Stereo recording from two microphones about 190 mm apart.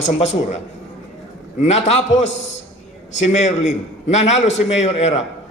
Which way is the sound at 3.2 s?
40° left (ahead or behind).